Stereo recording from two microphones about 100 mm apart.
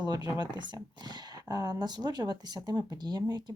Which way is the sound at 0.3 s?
45° right (ahead or behind).